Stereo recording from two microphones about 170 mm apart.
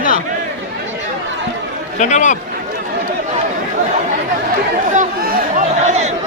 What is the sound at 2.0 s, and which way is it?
Speech, 45° left (ahead or behind).